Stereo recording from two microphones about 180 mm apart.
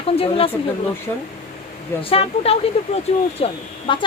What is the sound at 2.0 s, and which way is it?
A woman's voice, 35° left (ahead or behind).